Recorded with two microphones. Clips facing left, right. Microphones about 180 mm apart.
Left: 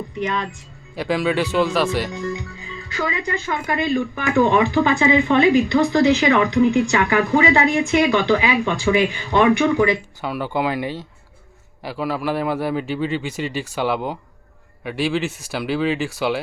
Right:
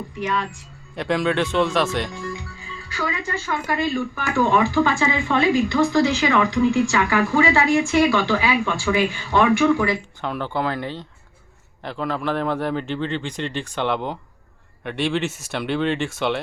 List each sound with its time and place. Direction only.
0.9 s speech: 5° left (ahead or behind)
2.6 s speech: 20° left (ahead or behind)
10.2 s a man's voice: 5° left (ahead or behind)